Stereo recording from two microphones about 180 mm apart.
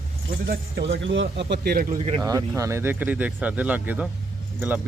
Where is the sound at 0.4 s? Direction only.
75° right (ahead or behind); by 2.0 s 55° right (ahead or behind).